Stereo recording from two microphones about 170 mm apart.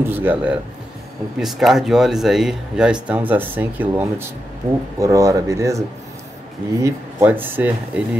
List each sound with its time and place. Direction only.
0.0 s speech: 10° right (ahead or behind)